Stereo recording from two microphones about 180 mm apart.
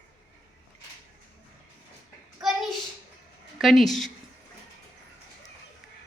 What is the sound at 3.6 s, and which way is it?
Speech, centre (ahead or behind).